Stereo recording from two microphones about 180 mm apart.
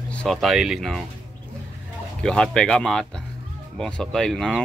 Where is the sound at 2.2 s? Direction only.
5° left (ahead or behind).